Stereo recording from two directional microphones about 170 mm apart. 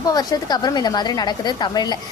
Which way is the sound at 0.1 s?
20° left (ahead or behind).